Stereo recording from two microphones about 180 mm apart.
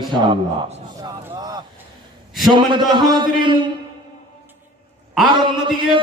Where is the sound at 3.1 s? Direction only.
25° right (ahead or behind).